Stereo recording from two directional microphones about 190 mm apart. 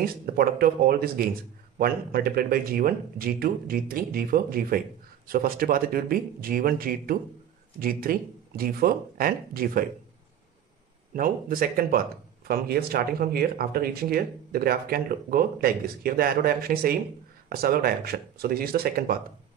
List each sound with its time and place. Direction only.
0.0 s speech: 50° right (ahead or behind)
11.1 s speech: 50° right (ahead or behind)